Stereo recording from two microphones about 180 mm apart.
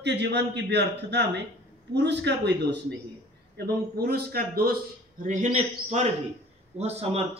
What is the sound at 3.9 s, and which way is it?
Speech, 60° right (ahead or behind).